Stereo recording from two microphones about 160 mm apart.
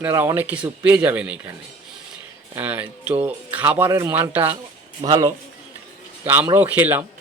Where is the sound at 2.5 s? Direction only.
10° right (ahead or behind).